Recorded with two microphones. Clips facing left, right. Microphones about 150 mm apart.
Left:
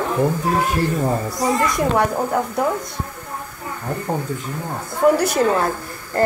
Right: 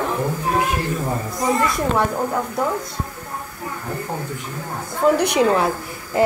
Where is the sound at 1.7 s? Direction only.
15° left (ahead or behind).